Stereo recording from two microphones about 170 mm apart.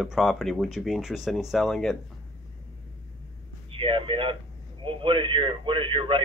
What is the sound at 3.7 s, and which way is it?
Speech, 30° right (ahead or behind).